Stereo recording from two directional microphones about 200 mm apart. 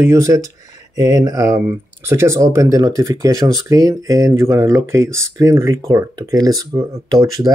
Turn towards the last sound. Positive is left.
turn(degrees=-15)  # may be behind; listen again after turning